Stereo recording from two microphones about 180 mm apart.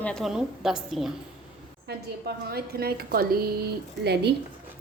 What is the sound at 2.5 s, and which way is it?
A woman's voice, 60° right (ahead or behind).